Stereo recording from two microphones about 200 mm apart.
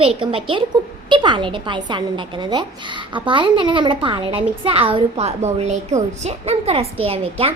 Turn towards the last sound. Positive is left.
turn(degrees=-30)  # may be behind; listen again after turning